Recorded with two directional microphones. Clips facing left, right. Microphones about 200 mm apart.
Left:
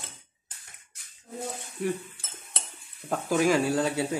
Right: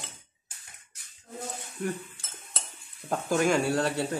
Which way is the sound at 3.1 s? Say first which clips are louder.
Left 1 dB; 5° left (ahead or behind).